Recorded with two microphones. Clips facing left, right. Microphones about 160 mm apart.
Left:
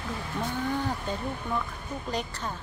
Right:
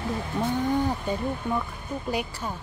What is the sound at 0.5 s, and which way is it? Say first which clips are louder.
Speech: right 5 dB; 10° right (ahead or behind).